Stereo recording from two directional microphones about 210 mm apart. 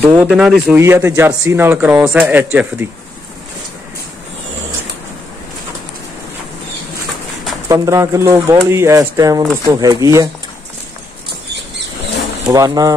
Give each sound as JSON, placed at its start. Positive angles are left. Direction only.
{"t": 0.1, "sound": "speech", "side_deg": -5}
{"t": 0.7, "sound": "a man's voice", "side_deg": -15}
{"t": 7.6, "sound": "a man's voice", "side_deg": -15}
{"t": 12.5, "sound": "a man's voice", "side_deg": -15}